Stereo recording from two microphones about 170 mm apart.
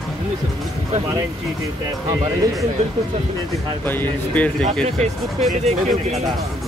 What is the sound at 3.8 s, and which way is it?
Speech, 10° left (ahead or behind).